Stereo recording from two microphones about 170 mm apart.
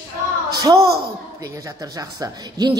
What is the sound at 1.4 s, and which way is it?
A woman's voice, 20° right (ahead or behind).